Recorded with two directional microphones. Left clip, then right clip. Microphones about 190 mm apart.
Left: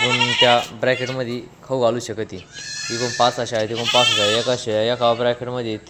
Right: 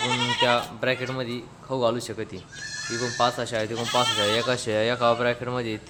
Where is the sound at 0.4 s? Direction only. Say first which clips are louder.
Left 6 dB; 15° left (ahead or behind).